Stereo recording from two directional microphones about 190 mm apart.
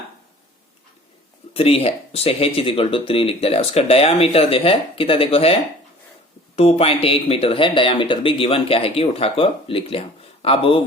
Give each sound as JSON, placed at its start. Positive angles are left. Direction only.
{"t": 1.5, "sound": "speech", "side_deg": 30}
{"t": 6.6, "sound": "speech", "side_deg": 30}